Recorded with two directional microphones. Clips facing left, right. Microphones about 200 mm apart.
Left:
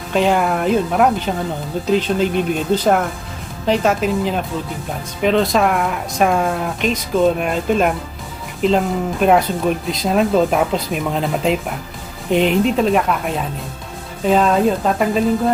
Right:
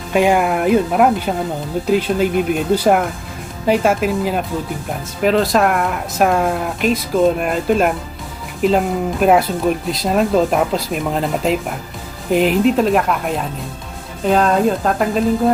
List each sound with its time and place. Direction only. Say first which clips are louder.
0.1 s speech: right 2 dB; 10° right (ahead or behind)